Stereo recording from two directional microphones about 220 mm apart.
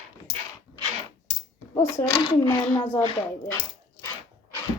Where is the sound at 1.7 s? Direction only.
10° left (ahead or behind).